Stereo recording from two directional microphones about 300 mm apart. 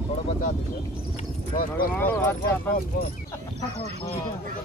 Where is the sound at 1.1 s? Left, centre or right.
Left.